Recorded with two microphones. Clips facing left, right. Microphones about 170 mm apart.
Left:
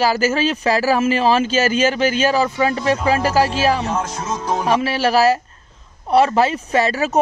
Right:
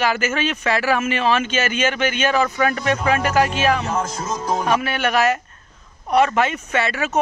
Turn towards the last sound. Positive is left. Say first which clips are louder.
# left 4 dB
turn(degrees=35)  # may be behind; listen again after turning